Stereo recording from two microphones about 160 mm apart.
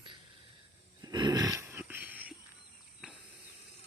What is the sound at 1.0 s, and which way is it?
Dog, 25° right (ahead or behind).